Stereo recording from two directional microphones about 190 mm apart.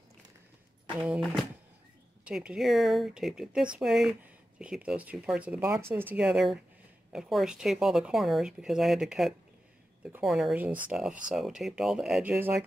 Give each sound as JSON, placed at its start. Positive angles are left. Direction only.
{"t": 0.9, "sound": "speech", "side_deg": -5}